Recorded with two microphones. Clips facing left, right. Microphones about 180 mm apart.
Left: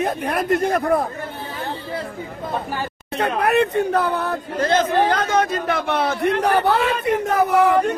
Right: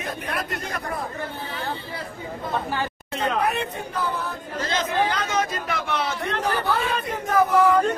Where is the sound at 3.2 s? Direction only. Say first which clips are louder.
Left 6 dB; 65° left (ahead or behind).